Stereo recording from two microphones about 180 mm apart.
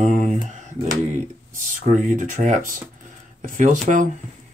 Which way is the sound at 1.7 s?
45° right (ahead or behind).